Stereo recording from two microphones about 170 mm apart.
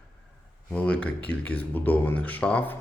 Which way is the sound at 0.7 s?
5° left (ahead or behind).